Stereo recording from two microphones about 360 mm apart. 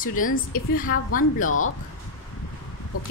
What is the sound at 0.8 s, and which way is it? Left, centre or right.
Speech, left.